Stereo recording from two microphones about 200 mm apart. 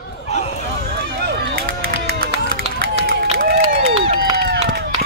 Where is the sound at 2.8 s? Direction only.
50° right (ahead or behind).